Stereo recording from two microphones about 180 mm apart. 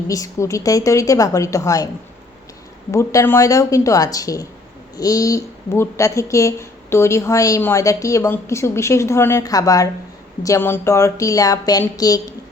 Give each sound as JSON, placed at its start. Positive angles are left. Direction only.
{"t": 0.1, "sound": "a woman's voice", "side_deg": 20}
{"t": 2.9, "sound": "a woman's voice", "side_deg": 15}